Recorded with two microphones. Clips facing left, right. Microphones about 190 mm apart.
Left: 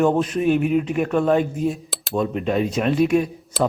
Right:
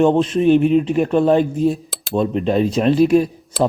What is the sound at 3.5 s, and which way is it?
Speech, centre (ahead or behind).